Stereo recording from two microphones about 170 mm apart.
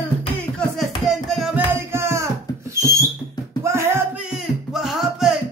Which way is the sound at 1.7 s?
15° right (ahead or behind).